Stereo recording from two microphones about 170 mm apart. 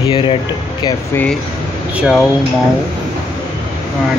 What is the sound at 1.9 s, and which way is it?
Speech, 5° right (ahead or behind).